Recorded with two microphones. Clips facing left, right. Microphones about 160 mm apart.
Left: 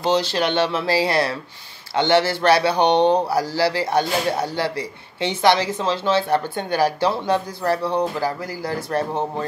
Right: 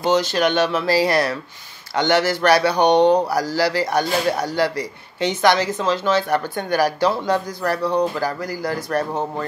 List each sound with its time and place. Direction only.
0.0 s speech: 30° left (ahead or behind)
2.8 s speech: 15° right (ahead or behind)
3.5 s speech: 25° left (ahead or behind)